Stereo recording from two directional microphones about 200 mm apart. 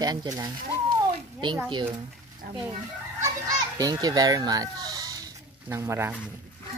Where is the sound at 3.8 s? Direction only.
20° right (ahead or behind).